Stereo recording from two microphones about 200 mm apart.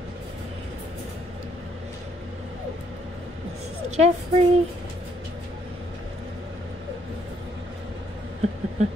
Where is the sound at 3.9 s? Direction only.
35° right (ahead or behind).